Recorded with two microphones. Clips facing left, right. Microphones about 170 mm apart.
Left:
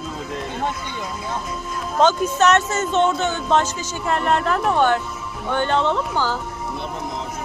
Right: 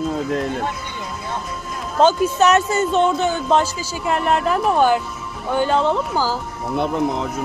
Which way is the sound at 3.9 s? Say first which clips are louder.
Right 1 dB; 10° right (ahead or behind).